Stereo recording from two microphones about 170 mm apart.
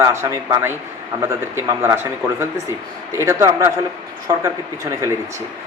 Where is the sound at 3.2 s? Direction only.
15° right (ahead or behind).